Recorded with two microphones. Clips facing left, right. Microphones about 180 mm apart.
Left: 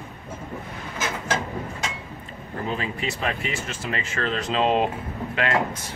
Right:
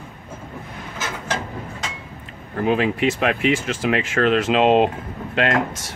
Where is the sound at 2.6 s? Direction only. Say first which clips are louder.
Right 10 dB; 70° right (ahead or behind).